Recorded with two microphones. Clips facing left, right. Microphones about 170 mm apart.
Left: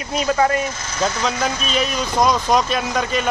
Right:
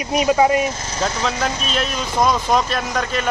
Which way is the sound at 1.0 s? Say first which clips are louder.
Left 1 dB; centre (ahead or behind).